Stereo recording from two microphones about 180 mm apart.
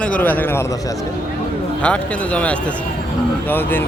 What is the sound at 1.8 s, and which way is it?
Speech, 5° left (ahead or behind).